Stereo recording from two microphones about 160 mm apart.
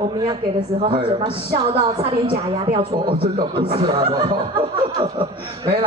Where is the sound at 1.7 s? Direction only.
35° right (ahead or behind).